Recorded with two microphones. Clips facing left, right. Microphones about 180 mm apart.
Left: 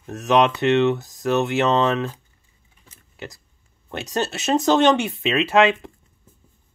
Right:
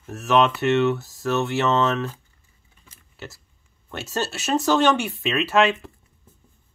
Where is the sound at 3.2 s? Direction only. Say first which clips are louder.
Left 3 dB; 15° left (ahead or behind).